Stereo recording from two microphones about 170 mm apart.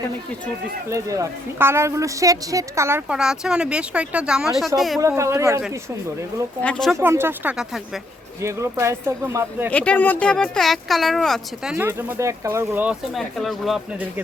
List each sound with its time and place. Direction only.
0.9 s a woman's voice: 20° right (ahead or behind)
3.2 s speech: 5° right (ahead or behind)
4.9 s speech: 15° right (ahead or behind)
6.6 s speech: 5° left (ahead or behind)
6.9 s speech: 15° right (ahead or behind)
8.4 s speech: 15° right (ahead or behind)
9.6 s speech: 10° left (ahead or behind)
11.9 s speech: 15° right (ahead or behind)